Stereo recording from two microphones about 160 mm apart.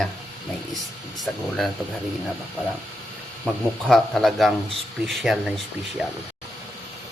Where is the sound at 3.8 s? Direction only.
Centre (ahead or behind).